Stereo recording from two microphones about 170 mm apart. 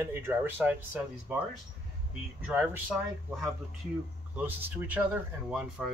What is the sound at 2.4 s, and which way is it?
Speech, 5° right (ahead or behind).